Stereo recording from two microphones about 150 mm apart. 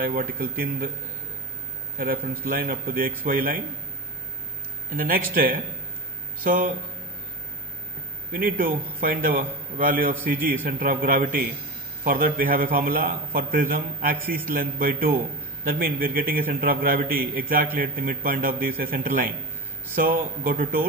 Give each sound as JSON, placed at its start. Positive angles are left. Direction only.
{"t": 0.0, "sound": "a man's voice", "side_deg": -75}
{"t": 2.0, "sound": "a man's voice", "side_deg": -75}
{"t": 4.9, "sound": "a man's voice", "side_deg": -75}
{"t": 8.3, "sound": "a man's voice", "side_deg": -70}